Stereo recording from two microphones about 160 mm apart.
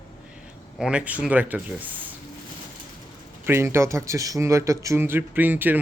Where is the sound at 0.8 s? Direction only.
5° right (ahead or behind).